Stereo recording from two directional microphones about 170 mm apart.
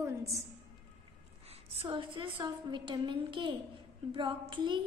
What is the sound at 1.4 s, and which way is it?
A woman's voice, 35° right (ahead or behind).